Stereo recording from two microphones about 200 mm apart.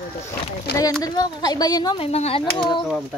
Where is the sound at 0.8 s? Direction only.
20° left (ahead or behind).